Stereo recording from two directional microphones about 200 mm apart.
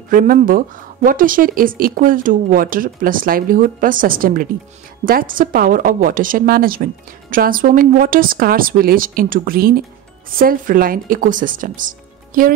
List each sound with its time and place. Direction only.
0.1 s a woman's voice: 40° right (ahead or behind)